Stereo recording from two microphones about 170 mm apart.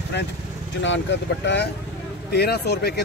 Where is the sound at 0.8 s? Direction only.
90° left.